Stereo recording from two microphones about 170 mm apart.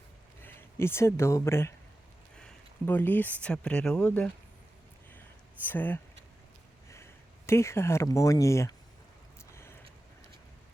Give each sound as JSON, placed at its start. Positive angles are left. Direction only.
{"t": 0.4, "sound": "speech", "side_deg": 15}
{"t": 5.6, "sound": "speech", "side_deg": 10}